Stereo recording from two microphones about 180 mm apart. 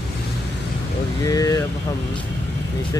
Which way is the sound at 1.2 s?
20° left (ahead or behind).